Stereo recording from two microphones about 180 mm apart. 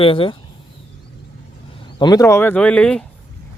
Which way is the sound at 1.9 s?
20° left (ahead or behind).